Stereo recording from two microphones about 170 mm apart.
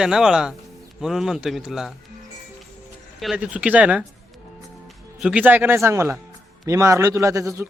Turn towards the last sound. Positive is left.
turn(degrees=-15)  # may be behind; listen again after turning